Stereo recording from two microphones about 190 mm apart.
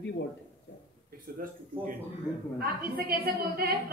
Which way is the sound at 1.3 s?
50° right (ahead or behind).